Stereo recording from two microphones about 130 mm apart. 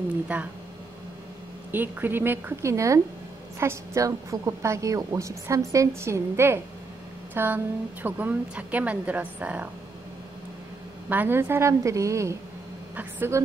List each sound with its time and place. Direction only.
0.3 s speech: 10° right (ahead or behind)
1.7 s a woman's voice: 15° right (ahead or behind)
11.1 s a woman's voice: 15° right (ahead or behind)